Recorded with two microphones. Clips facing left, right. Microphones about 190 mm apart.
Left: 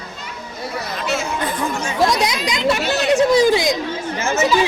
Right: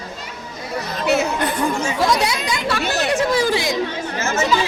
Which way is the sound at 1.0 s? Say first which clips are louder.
Right 5 dB; 60° right (ahead or behind).